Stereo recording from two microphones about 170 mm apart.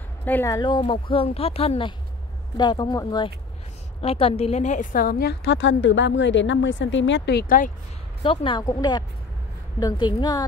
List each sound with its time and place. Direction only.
0.2 s speech: 10° left (ahead or behind)
4.0 s a woman's voice: 35° left (ahead or behind); by 7.4 s 85° left
7.4 s speech: 55° left (ahead or behind)
8.2 s speech: 30° left (ahead or behind)